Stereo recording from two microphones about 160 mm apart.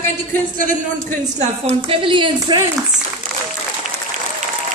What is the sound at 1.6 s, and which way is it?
Speech, 35° right (ahead or behind).